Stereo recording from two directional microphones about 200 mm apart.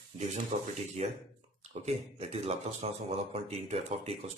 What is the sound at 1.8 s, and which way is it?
Speech, 30° right (ahead or behind).